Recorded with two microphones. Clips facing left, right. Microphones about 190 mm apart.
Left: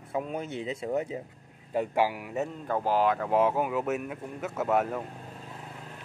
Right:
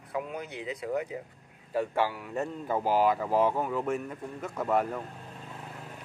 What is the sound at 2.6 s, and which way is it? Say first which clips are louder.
Speech: right 1 dB; 10° right (ahead or behind).